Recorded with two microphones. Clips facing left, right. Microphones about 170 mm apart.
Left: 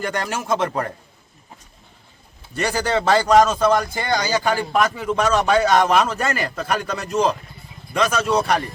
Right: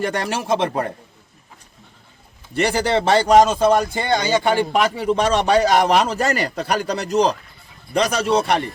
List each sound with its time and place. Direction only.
0.0 s speech: 30° right (ahead or behind)
2.6 s speech: 25° right (ahead or behind)